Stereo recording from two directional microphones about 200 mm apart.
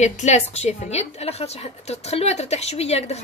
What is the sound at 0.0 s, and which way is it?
A woman's voice, 35° left (ahead or behind).